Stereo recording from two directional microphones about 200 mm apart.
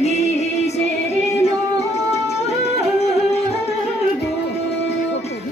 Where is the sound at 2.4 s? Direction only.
30° left (ahead or behind).